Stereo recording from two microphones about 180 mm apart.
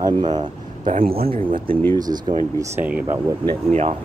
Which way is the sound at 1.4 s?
30° right (ahead or behind).